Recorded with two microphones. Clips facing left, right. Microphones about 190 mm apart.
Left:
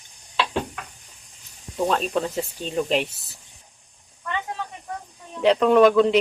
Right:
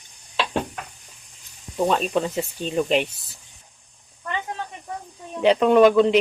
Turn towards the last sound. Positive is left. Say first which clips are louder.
# right 1 dB
turn(degrees=0)  # may be behind; listen again after turning